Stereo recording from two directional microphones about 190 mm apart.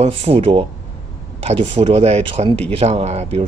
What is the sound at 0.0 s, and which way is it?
Speech, 30° right (ahead or behind).